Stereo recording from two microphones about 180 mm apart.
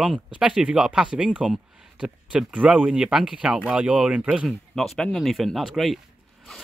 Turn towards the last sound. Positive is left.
turn(degrees=0)  # may be behind; listen again after turning